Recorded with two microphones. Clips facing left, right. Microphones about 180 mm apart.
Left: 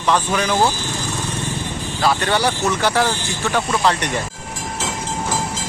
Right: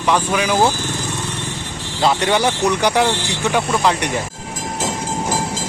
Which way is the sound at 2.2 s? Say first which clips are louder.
Right 2 dB; 15° right (ahead or behind).